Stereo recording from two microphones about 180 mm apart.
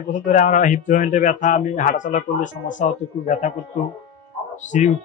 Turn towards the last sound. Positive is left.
turn(degrees=40)  # may be behind; listen again after turning